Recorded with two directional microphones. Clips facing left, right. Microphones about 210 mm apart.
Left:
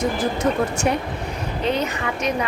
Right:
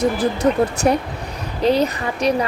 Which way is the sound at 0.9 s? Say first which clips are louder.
Right 4 dB; 40° right (ahead or behind).